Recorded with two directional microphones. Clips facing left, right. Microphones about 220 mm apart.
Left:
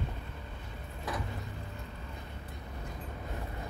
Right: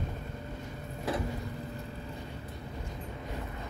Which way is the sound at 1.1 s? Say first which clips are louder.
Right 5 dB; 30° right (ahead or behind).